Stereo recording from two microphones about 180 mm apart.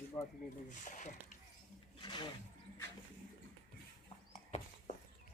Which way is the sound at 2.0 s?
25° left (ahead or behind).